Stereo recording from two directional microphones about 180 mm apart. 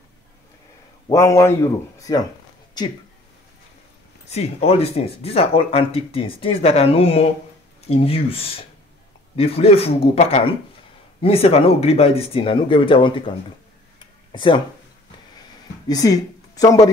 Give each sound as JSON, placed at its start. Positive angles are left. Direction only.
{"t": 1.0, "sound": "speech", "side_deg": 15}
{"t": 4.3, "sound": "speech", "side_deg": 35}
{"t": 13.9, "sound": "a sound", "side_deg": 25}
{"t": 15.9, "sound": "speech", "side_deg": 20}